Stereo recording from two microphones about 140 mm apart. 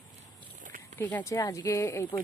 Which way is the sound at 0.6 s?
70° right (ahead or behind).